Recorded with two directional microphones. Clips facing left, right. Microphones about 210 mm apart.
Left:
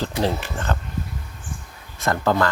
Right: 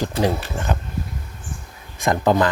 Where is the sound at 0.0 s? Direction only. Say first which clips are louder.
Right 2 dB; 15° right (ahead or behind).